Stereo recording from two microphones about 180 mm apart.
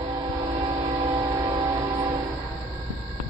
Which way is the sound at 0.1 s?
25° right (ahead or behind).